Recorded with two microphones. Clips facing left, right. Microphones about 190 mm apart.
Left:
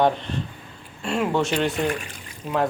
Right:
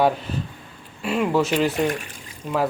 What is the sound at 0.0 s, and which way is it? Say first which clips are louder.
Speech: even; 5° right (ahead or behind).